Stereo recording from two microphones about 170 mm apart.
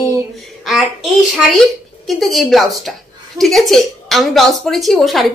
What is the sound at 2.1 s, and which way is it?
A woman's voice, centre (ahead or behind).